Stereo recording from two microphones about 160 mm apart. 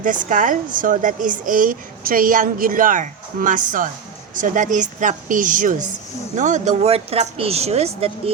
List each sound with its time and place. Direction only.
0.0 s speech: 55° right (ahead or behind); by 8.3 s 40° right (ahead or behind)